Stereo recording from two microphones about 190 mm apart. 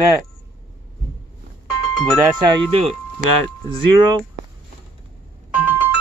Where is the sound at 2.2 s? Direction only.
25° right (ahead or behind).